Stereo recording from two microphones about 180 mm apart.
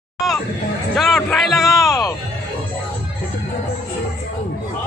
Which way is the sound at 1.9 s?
20° left (ahead or behind).